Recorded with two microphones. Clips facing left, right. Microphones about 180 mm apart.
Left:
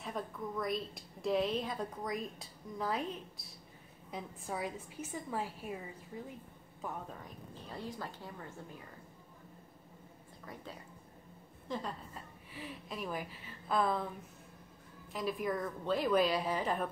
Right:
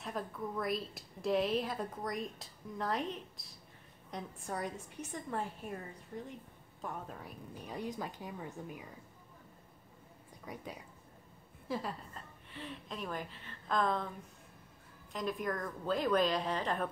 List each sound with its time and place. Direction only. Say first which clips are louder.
0.0 s a woman's voice: even; centre (ahead or behind)
10.4 s a woman's voice: right 2 dB; 15° right (ahead or behind)
12.1 s a woman's voice: left 1 dB; 10° left (ahead or behind)
15.1 s a woman's voice: left 1 dB; 5° left (ahead or behind)